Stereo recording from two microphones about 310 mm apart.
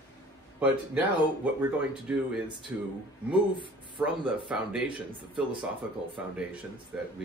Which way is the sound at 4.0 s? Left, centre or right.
Centre.